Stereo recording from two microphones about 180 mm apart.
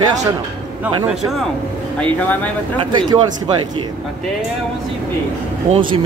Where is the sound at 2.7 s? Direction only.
25° right (ahead or behind).